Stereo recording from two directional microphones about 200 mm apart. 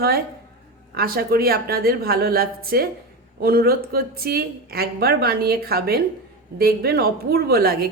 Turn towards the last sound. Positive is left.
turn(degrees=-50)  # may be behind; listen again after turning